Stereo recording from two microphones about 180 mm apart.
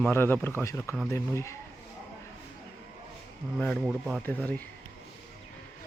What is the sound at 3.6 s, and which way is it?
Speech, centre (ahead or behind).